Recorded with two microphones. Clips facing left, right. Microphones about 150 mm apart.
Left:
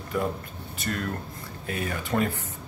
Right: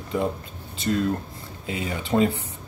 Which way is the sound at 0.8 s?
20° right (ahead or behind).